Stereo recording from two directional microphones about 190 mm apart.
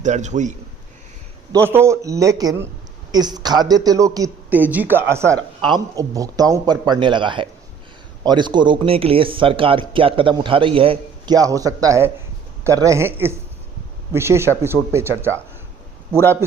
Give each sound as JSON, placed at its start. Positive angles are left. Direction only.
{"t": 0.0, "sound": "a man's voice", "side_deg": -40}
{"t": 1.7, "sound": "speech", "side_deg": -15}